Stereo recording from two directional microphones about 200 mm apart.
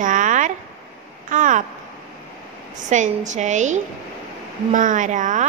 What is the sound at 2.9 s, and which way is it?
Speech, 35° right (ahead or behind).